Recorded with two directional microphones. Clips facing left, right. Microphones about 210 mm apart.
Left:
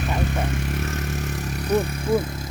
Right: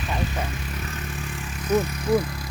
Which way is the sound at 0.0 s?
55° left (ahead or behind).